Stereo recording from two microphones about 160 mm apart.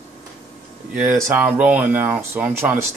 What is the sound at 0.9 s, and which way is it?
A man's voice, 5° right (ahead or behind).